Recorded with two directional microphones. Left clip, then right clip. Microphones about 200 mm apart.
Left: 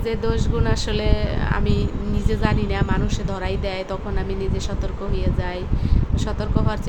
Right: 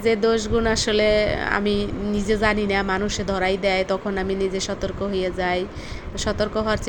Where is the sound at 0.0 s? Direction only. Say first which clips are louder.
Right 5 dB; 20° right (ahead or behind).